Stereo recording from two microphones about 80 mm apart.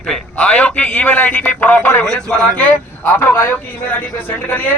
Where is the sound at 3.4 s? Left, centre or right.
Left.